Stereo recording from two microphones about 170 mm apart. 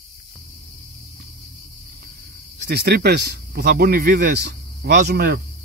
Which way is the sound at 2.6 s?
65° right (ahead or behind).